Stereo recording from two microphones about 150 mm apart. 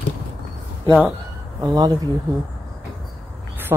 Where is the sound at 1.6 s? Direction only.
25° right (ahead or behind).